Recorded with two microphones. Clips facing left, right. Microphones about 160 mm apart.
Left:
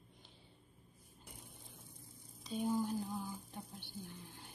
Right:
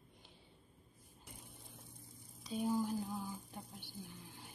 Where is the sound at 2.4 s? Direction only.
5° right (ahead or behind).